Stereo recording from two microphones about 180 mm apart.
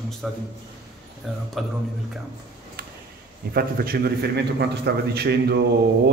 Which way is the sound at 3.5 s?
55° right (ahead or behind).